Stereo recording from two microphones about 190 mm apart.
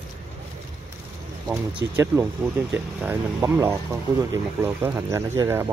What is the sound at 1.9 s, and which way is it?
Speech, 10° right (ahead or behind).